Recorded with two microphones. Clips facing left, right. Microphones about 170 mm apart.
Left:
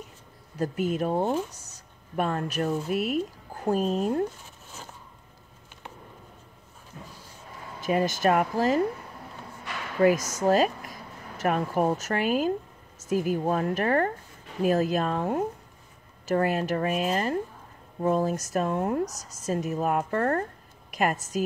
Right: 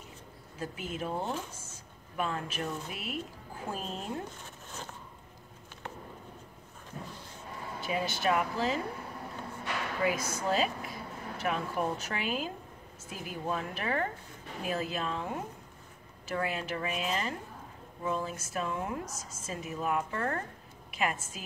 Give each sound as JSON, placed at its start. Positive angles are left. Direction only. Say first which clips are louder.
{"t": 0.6, "sound": "speech", "louder": "left 10 dB", "side_deg": 40}
{"t": 7.8, "sound": "speech", "louder": "left 8 dB", "side_deg": 45}
{"t": 10.0, "sound": "speech", "louder": "left 10 dB", "side_deg": 45}